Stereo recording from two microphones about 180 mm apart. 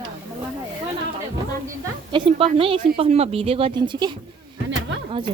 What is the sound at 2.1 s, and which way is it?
Speech, 30° right (ahead or behind).